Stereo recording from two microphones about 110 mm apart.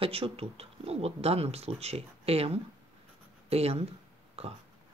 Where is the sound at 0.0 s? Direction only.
60° right (ahead or behind).